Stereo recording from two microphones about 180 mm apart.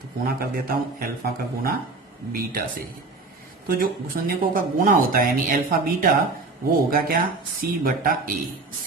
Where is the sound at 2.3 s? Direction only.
55° right (ahead or behind).